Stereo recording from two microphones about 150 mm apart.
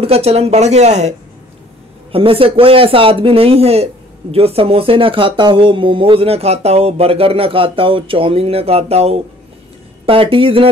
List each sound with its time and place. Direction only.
0.0 s speech: 40° right (ahead or behind)
2.1 s speech: 35° right (ahead or behind)